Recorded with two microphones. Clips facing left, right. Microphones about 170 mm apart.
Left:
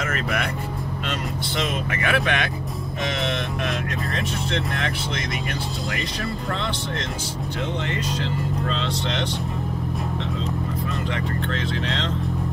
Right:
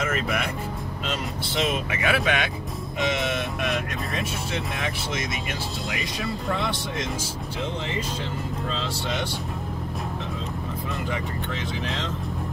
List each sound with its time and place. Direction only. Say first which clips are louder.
0.0 s speech: even; 5° right (ahead or behind)
1.6 s speech: right 1 dB; 5° right (ahead or behind)
8.2 s speech: left 4 dB; 5° right (ahead or behind)
11.5 s speech: left 4 dB; 90° left